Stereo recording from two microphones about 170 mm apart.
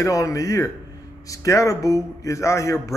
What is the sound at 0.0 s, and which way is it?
A man's voice, 20° left (ahead or behind).